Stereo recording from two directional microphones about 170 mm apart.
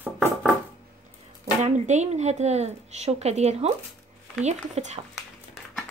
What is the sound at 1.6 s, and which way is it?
Speech, 40° right (ahead or behind).